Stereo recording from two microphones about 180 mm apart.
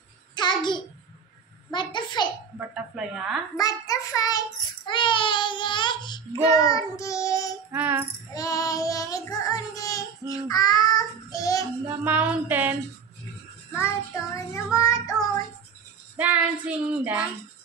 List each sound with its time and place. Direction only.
0.4 s hands: 25° left (ahead or behind)
1.7 s a sound: 25° left (ahead or behind)
2.7 s a woman's voice: 5° right (ahead or behind)
3.5 s child singing: 20° left (ahead or behind)
7.7 s music: 10° right (ahead or behind)
8.4 s child singing: 20° left (ahead or behind)
11.9 s a sound: 10° right (ahead or behind)
13.7 s child singing: 15° left (ahead or behind)
16.2 s child singing: 10° right (ahead or behind)